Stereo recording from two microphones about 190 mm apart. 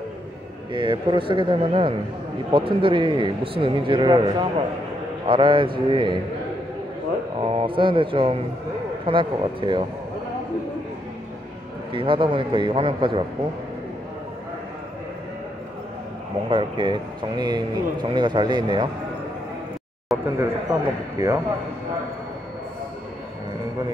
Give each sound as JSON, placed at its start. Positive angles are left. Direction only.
{"t": 0.7, "sound": "speech", "side_deg": -25}
{"t": 7.3, "sound": "speech", "side_deg": -30}
{"t": 11.9, "sound": "speech", "side_deg": -25}
{"t": 16.4, "sound": "speech", "side_deg": -25}
{"t": 20.2, "sound": "speech", "side_deg": -15}